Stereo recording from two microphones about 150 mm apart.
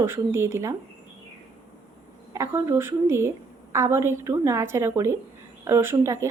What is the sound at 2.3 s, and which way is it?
Speech, 20° right (ahead or behind).